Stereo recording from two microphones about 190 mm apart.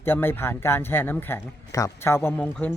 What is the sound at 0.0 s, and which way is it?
Speech, 10° left (ahead or behind).